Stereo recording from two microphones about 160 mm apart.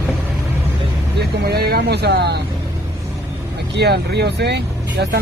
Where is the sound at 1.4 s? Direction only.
80° right.